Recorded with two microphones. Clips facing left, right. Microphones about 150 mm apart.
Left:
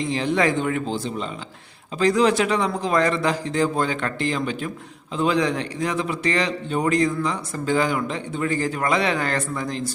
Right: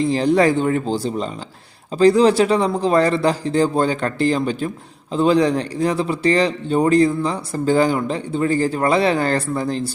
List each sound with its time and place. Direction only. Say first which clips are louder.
0.0 s a man's voice: right 6 dB; 35° right (ahead or behind)